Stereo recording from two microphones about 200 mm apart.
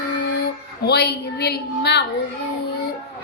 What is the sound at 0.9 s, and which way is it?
Speech, 55° left (ahead or behind).